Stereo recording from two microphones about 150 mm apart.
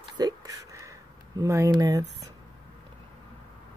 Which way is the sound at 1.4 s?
20° right (ahead or behind).